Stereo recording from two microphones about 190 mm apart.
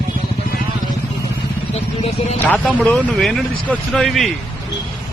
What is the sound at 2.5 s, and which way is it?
Speech, 5° left (ahead or behind).